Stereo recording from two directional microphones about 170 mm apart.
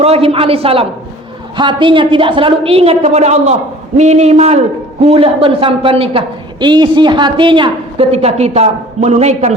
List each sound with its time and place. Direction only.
0.0 s a woman's voice: 35° right (ahead or behind)